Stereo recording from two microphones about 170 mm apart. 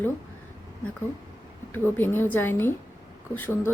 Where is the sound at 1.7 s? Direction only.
10° left (ahead or behind).